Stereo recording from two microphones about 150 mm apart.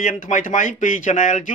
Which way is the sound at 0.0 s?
60° left (ahead or behind).